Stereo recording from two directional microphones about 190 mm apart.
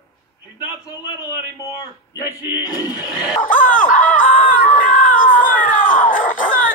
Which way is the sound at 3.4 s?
45° left (ahead or behind).